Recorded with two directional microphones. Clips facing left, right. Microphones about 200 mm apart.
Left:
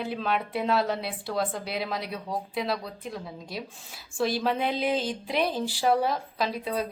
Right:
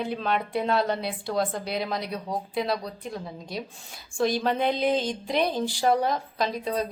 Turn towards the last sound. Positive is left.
turn(degrees=5)  # may be behind; listen again after turning